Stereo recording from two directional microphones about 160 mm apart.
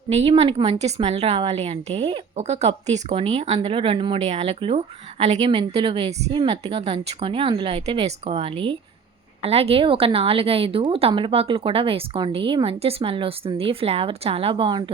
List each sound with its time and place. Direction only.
0.1 s a woman's voice: 40° right (ahead or behind)